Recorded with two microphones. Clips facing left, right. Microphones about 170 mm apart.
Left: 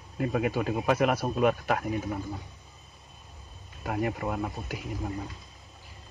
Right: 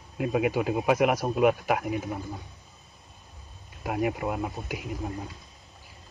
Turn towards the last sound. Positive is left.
turn(degrees=-10)  # may be behind; listen again after turning